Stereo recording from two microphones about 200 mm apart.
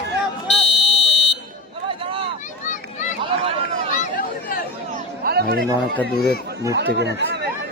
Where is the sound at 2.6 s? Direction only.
40° left (ahead or behind).